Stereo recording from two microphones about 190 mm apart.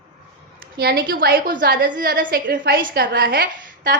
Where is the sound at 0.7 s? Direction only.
55° right (ahead or behind).